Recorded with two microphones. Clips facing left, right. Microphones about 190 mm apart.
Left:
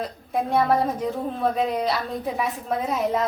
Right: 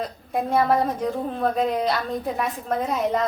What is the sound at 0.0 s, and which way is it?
A woman's voice, centre (ahead or behind).